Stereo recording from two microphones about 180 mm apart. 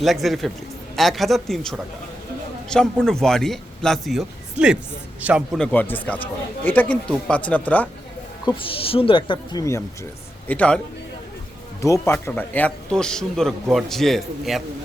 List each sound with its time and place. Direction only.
0.0 s a man's voice: centre (ahead or behind)
5.5 s speech: 5° left (ahead or behind)
8.4 s speech: 30° left (ahead or behind)
10.5 s speech: 5° left (ahead or behind)
11.8 s speech: 15° left (ahead or behind)